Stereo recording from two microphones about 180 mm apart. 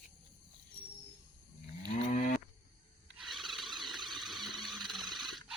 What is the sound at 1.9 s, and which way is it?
Cattle, 40° left (ahead or behind).